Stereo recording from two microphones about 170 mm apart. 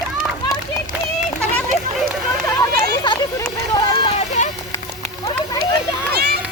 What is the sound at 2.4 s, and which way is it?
Speech, 25° left (ahead or behind).